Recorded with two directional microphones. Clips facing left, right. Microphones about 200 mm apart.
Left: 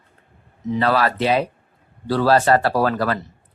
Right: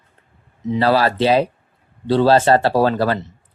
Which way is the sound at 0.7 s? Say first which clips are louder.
Right 3 dB; 30° right (ahead or behind).